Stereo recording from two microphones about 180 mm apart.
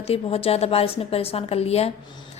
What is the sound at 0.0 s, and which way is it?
A woman's voice, 35° left (ahead or behind).